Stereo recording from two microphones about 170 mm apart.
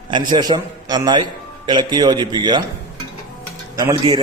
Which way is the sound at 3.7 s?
20° right (ahead or behind).